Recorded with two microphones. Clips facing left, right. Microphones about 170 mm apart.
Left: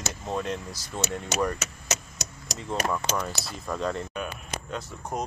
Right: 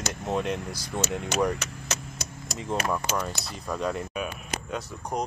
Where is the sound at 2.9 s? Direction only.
5° right (ahead or behind).